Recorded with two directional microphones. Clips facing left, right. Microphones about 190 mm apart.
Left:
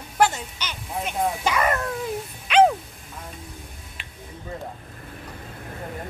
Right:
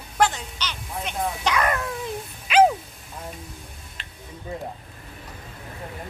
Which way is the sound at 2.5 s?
5° right (ahead or behind).